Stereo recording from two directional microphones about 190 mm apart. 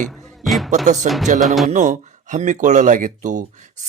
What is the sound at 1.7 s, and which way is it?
Speech, 40° right (ahead or behind).